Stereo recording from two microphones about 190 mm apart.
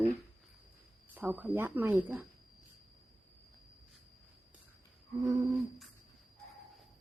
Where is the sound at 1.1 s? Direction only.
10° right (ahead or behind).